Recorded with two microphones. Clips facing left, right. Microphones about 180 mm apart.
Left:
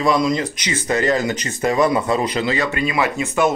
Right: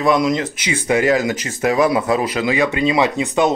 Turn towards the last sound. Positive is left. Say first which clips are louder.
# right 2 dB
turn(degrees=-20)  # may be behind; listen again after turning